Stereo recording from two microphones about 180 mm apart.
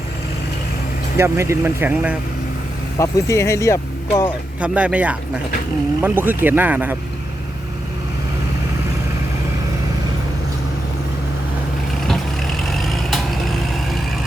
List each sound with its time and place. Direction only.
1.1 s speech: 15° right (ahead or behind)
3.0 s speech: 15° left (ahead or behind)
4.6 s speech: 5° right (ahead or behind)
12.0 s vehicle: centre (ahead or behind)